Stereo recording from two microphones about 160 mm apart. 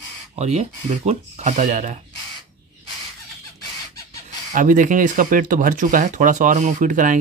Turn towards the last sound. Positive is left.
turn(degrees=-55)  # may be behind; listen again after turning